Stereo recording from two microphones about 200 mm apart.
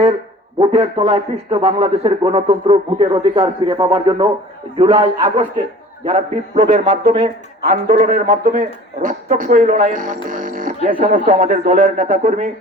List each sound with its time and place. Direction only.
0.6 s a man's voice: 30° right (ahead or behind)
7.6 s a man's voice: 45° right (ahead or behind)